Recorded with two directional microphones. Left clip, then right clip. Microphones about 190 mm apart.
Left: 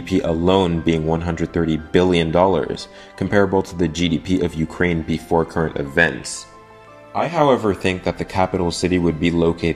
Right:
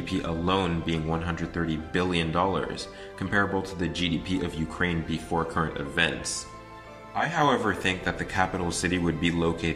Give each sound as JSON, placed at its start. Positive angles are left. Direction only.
{"t": 0.0, "sound": "speech", "side_deg": 35}
{"t": 7.2, "sound": "speech", "side_deg": 25}